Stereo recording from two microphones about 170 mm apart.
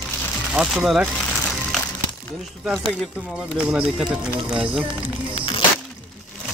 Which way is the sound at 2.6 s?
Centre (ahead or behind).